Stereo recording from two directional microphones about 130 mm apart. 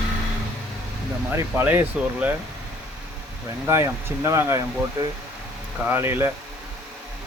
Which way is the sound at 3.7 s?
20° right (ahead or behind).